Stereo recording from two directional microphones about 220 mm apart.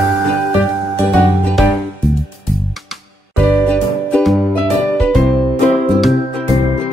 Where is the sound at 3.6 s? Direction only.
5° left (ahead or behind).